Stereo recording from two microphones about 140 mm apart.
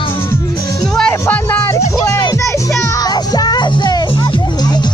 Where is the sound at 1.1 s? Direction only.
15° left (ahead or behind); by 4.9 s 30° left (ahead or behind).